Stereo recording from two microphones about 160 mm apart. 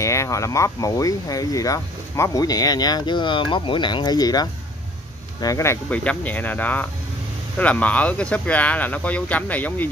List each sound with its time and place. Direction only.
0.0 s speech: 20° left (ahead or behind)